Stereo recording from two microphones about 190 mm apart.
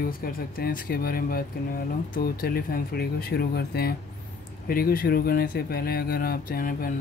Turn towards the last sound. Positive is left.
turn(degrees=45)  # may be behind; listen again after turning